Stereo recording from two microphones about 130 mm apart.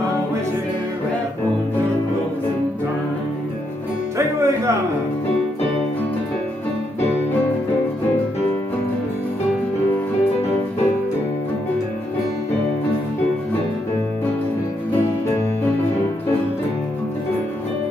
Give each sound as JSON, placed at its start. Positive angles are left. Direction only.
{"t": 4.4, "sound": "music", "side_deg": -25}